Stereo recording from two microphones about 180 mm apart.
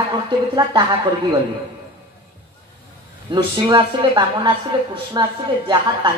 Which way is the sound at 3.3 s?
25° right (ahead or behind).